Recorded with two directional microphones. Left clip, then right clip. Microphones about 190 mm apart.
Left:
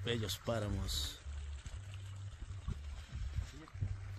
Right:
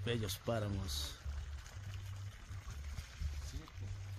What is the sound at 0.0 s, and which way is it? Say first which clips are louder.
Speech: left 1 dB; 5° left (ahead or behind).